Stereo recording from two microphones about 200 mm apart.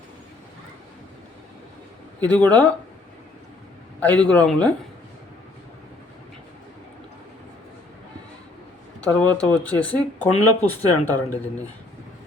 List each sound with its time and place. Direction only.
2.2 s speech: 5° left (ahead or behind)
4.0 s speech: 5° left (ahead or behind)
9.1 s speech: 5° left (ahead or behind)